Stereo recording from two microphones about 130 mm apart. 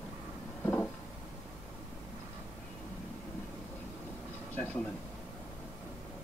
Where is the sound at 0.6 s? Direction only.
10° left (ahead or behind).